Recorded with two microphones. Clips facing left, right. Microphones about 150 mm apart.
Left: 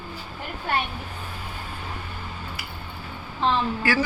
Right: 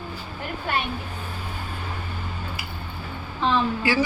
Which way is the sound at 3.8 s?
20° right (ahead or behind).